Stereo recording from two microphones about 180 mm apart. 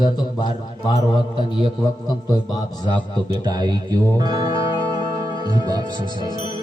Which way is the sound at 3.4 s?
25° right (ahead or behind).